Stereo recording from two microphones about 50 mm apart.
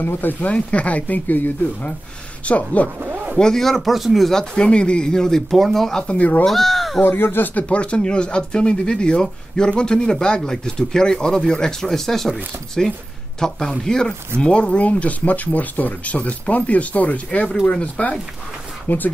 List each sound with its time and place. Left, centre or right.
0.0 s speech: left
0.5 s speech: left
3.0 s a sound: right
3.3 s speech: centre
6.0 s speech: left
6.4 s speech: centre
7.0 s speech: left
7.5 s speech: left
18.9 s speech: left